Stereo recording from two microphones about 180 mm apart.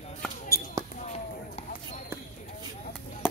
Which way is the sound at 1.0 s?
35° left (ahead or behind).